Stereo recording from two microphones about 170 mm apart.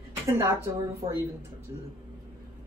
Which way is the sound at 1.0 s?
35° right (ahead or behind).